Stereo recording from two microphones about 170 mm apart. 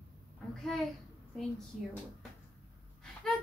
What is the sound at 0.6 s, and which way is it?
Speech, centre (ahead or behind).